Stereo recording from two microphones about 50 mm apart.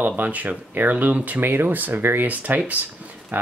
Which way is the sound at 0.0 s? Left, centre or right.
Right.